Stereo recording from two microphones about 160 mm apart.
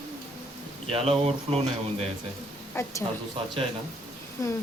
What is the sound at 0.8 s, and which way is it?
Speech, 35° right (ahead or behind).